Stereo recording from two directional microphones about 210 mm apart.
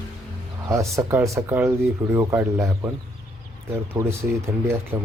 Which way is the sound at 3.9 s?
10° right (ahead or behind).